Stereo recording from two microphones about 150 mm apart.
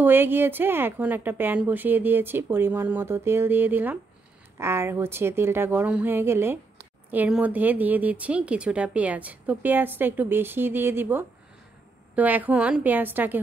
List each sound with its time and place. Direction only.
0.0 s a woman's voice: 15° right (ahead or behind)